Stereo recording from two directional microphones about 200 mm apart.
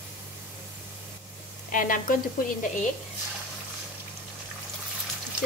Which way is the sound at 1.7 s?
40° left (ahead or behind).